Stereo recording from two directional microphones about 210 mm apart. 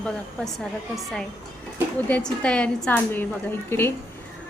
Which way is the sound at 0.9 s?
Centre (ahead or behind).